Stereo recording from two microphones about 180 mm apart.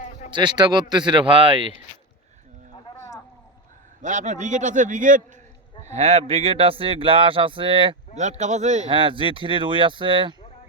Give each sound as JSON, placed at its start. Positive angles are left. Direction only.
{"t": 0.3, "sound": "speech", "side_deg": -25}
{"t": 4.0, "sound": "a man's voice", "side_deg": -45}
{"t": 8.1, "sound": "speech", "side_deg": -40}
{"t": 8.9, "sound": "speech", "side_deg": -30}